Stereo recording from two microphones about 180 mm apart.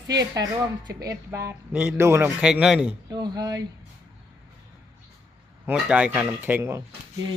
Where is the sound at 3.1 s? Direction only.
20° right (ahead or behind).